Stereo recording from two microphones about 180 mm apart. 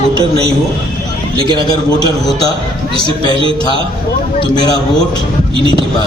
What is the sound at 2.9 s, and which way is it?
Speech, 25° left (ahead or behind).